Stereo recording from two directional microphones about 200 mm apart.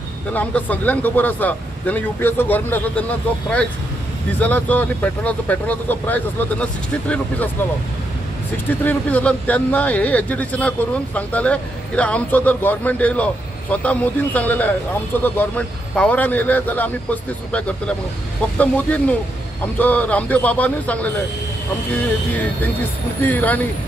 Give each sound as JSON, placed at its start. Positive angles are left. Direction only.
{"t": 0.3, "sound": "a man's voice", "side_deg": 5}
{"t": 8.6, "sound": "a man's voice", "side_deg": 10}